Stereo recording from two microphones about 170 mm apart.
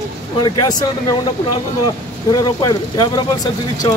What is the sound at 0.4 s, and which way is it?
Speech, 25° left (ahead or behind).